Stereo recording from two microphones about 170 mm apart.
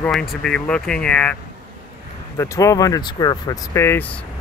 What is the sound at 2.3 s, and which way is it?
Speech, 20° left (ahead or behind).